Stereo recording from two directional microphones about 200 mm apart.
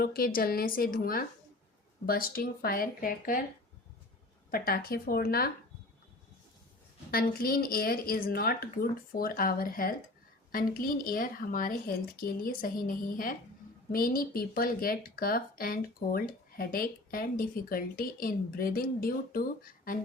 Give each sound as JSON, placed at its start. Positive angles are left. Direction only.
{"t": 0.0, "sound": "speech", "side_deg": 50}
{"t": 4.5, "sound": "speech", "side_deg": 50}
{"t": 7.1, "sound": "speech", "side_deg": 45}